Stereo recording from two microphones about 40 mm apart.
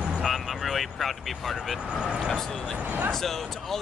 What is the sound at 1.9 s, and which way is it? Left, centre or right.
Speech, right.